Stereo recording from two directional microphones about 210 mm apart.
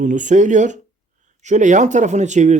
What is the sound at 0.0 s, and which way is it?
Speech, 35° right (ahead or behind).